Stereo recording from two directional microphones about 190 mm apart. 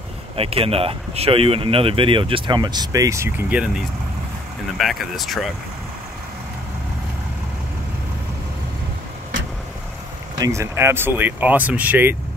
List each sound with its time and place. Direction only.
0.4 s speech: 30° right (ahead or behind); by 5.5 s centre (ahead or behind)
10.3 s speech: 20° right (ahead or behind)